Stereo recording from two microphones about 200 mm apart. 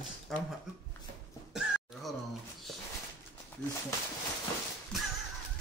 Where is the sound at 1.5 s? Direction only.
Centre (ahead or behind).